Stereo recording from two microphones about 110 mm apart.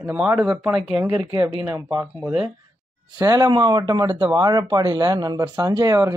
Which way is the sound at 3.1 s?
35° right (ahead or behind).